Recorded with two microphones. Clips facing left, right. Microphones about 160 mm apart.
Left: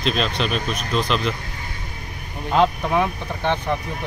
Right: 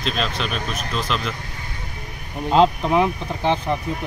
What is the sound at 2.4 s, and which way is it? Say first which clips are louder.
Speech: right 2 dB; 25° right (ahead or behind).